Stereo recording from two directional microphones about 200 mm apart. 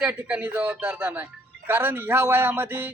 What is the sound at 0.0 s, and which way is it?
Speech, 10° right (ahead or behind).